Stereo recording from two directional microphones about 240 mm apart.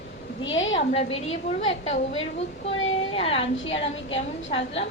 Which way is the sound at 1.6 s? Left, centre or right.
Left.